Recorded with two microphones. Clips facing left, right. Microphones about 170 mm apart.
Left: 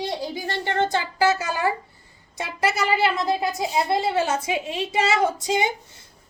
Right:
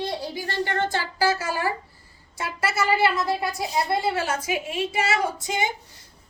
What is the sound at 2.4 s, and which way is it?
A woman's voice, 20° left (ahead or behind).